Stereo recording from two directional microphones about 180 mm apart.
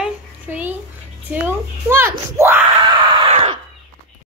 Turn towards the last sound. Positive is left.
turn(degrees=-30)  # may be behind; listen again after turning